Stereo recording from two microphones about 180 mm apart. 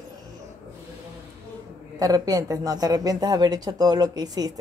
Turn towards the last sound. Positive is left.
turn(degrees=-20)  # may be behind; listen again after turning